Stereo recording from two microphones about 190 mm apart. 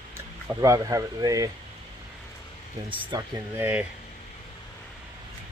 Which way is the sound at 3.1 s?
20° right (ahead or behind).